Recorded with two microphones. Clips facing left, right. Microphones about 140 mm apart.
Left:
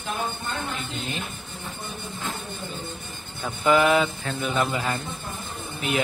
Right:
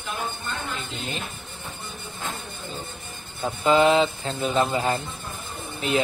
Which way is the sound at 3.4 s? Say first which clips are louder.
Right 1 dB; 25° right (ahead or behind).